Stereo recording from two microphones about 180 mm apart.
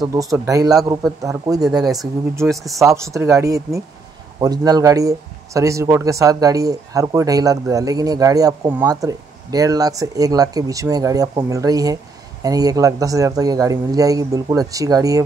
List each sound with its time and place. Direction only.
0.0 s speech: 20° right (ahead or behind)
1.7 s speech: centre (ahead or behind)
2.3 s speech: 15° right (ahead or behind)